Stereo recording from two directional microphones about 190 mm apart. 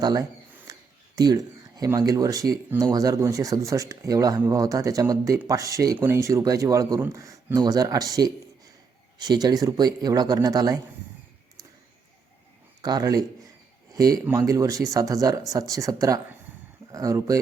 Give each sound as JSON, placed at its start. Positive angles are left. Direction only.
{"t": 0.0, "sound": "speech", "side_deg": -20}
{"t": 12.8, "sound": "speech", "side_deg": -20}